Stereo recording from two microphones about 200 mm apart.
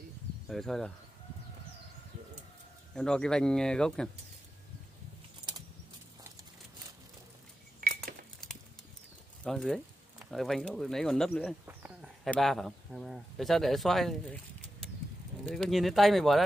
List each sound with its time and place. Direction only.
0.5 s speech: centre (ahead or behind)
2.9 s speech: 5° left (ahead or behind)
7.8 s chink: 45° right (ahead or behind)
9.4 s speech: 5° left (ahead or behind)
11.6 s a sound: 10° right (ahead or behind)
12.3 s speech: centre (ahead or behind)